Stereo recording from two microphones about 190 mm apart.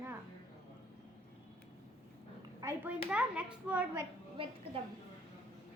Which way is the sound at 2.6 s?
5° right (ahead or behind).